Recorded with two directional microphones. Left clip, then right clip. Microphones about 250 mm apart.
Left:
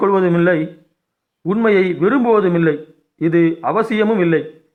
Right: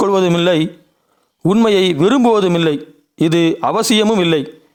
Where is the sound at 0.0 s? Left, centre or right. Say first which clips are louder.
Right 1 dB; right.